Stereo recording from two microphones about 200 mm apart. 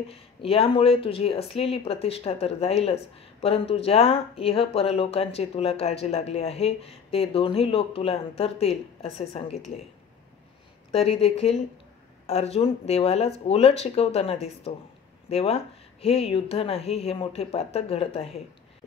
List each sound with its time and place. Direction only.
0.4 s speech: 30° left (ahead or behind)
10.9 s speech: 30° left (ahead or behind)